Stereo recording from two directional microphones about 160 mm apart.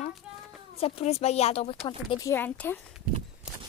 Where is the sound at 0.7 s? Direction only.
40° left (ahead or behind).